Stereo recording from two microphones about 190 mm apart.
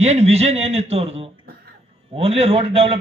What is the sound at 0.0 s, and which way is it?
A man's voice, 35° right (ahead or behind).